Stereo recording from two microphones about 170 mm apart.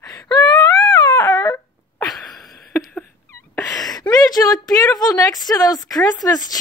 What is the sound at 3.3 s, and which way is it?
Cat, 20° left (ahead or behind).